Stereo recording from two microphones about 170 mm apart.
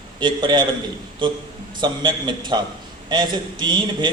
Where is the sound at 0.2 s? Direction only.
25° right (ahead or behind).